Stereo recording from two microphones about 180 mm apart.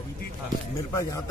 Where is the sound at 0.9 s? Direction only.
20° left (ahead or behind).